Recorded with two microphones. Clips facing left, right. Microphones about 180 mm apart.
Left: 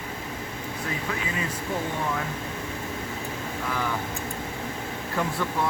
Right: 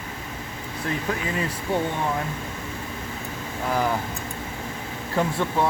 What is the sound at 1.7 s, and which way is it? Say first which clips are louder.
Speech: right 6 dB; 30° right (ahead or behind).